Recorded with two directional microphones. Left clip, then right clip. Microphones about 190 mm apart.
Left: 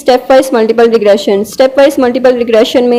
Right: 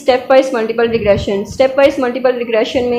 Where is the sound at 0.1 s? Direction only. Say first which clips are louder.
Left 4 dB; 45° left (ahead or behind).